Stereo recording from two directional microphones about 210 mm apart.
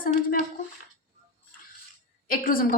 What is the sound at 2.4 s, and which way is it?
Speech, 40° left (ahead or behind).